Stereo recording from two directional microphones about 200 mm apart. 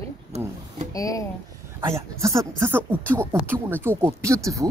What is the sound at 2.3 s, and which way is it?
Speech, 15° right (ahead or behind).